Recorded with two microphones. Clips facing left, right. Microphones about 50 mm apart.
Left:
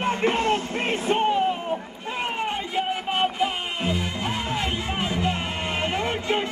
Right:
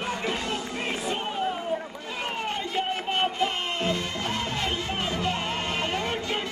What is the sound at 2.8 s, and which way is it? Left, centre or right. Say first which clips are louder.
Music: left 3 dB; centre.